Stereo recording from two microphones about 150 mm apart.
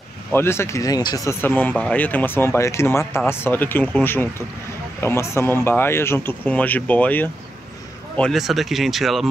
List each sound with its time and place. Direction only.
0.3 s speech: 15° left (ahead or behind)
8.2 s speech: centre (ahead or behind)